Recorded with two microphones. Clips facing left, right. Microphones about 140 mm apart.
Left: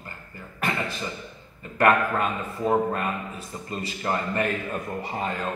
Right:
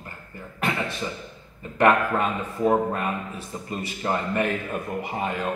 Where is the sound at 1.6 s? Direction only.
20° right (ahead or behind).